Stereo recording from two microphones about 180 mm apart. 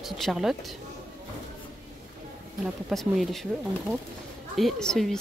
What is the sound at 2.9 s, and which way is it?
Speech, centre (ahead or behind).